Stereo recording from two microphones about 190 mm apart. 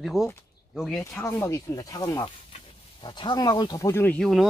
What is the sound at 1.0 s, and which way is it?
Speech, 15° left (ahead or behind).